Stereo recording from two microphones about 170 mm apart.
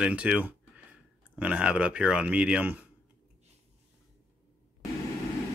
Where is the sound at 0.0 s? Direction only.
5° right (ahead or behind).